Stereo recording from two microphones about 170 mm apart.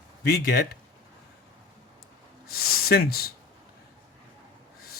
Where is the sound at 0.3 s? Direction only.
65° left (ahead or behind).